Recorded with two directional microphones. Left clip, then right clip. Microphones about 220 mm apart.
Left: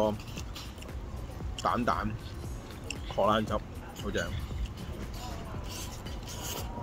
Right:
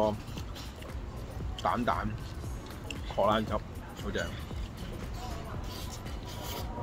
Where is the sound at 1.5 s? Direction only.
10° left (ahead or behind).